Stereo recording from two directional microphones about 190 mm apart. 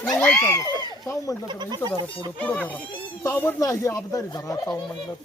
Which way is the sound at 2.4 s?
10° left (ahead or behind).